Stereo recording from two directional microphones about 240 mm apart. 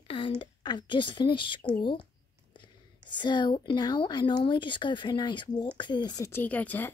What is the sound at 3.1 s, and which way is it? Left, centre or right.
Speech, centre.